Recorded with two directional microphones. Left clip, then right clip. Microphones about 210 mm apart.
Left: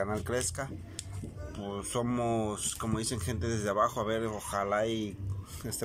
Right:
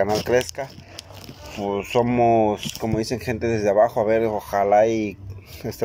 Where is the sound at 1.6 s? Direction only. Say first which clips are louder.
Right 14 dB; 45° right (ahead or behind).